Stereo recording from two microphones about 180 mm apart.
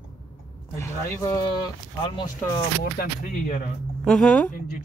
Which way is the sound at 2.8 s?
50° left (ahead or behind).